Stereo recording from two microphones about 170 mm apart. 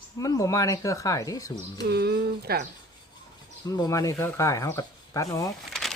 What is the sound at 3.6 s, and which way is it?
Speech, 20° left (ahead or behind).